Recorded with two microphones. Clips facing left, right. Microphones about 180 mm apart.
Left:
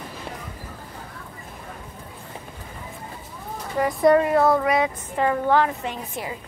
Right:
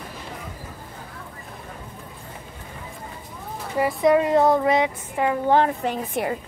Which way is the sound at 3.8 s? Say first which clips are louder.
Left 1 dB; centre (ahead or behind).